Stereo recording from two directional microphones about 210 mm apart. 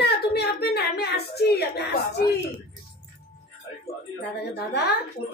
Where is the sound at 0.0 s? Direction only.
50° left (ahead or behind).